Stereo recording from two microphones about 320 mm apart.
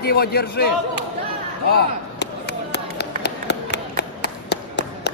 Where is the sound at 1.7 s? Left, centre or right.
Left.